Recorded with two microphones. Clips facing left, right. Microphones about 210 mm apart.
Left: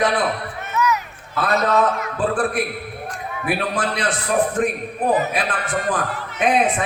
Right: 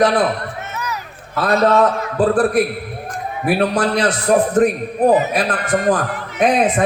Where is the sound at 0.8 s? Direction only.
35° right (ahead or behind).